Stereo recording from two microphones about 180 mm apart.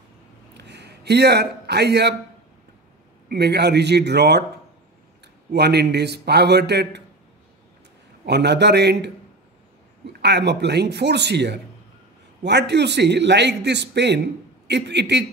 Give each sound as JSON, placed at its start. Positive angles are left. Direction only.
{"t": 0.6, "sound": "a sound", "side_deg": -70}
{"t": 3.3, "sound": "a man's voice", "side_deg": -65}
{"t": 5.5, "sound": "a man's voice", "side_deg": -65}
{"t": 8.3, "sound": "a man's voice", "side_deg": -70}
{"t": 10.2, "sound": "a man's voice", "side_deg": -70}